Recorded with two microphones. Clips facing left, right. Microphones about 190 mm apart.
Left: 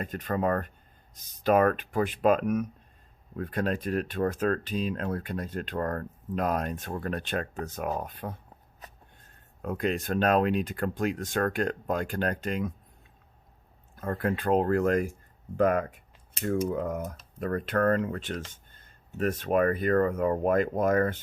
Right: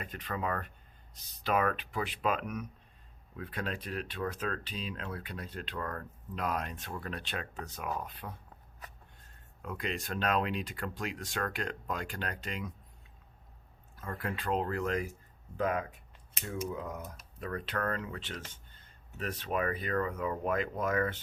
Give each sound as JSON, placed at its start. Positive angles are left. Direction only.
{"t": 0.0, "sound": "speech", "side_deg": 45}
{"t": 9.6, "sound": "speech", "side_deg": 45}
{"t": 13.9, "sound": "speech", "side_deg": 50}